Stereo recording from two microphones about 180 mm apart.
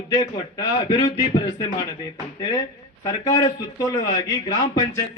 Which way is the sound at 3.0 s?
20° left (ahead or behind).